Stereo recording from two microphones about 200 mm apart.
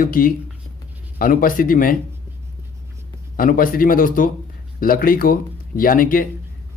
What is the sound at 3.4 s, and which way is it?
Speech, 45° left (ahead or behind).